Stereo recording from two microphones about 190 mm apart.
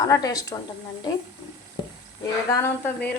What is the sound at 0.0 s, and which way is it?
Speech, 20° left (ahead or behind).